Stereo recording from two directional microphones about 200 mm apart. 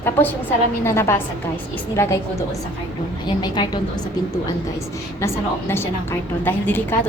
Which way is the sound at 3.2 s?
20° left (ahead or behind).